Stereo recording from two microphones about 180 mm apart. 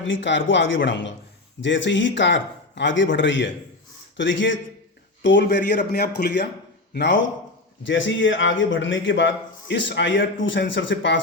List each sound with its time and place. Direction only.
0.0 s a man's voice: 85° left; by 6.5 s 65° left (ahead or behind)
6.9 s a man's voice: 80° left
7.9 s a man's voice: 90° left